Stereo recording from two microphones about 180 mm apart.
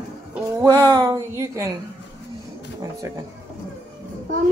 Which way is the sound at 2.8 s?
15° right (ahead or behind).